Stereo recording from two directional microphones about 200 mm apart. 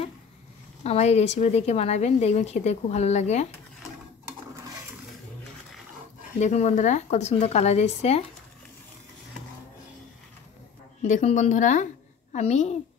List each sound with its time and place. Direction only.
0.8 s a woman's voice: 35° left (ahead or behind)
6.4 s a woman's voice: 35° left (ahead or behind)
11.1 s a woman's voice: 35° left (ahead or behind)